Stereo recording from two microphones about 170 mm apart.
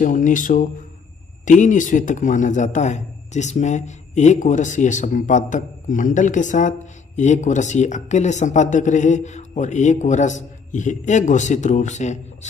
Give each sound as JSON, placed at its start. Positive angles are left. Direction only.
{"t": 0.0, "sound": "a man's voice", "side_deg": 50}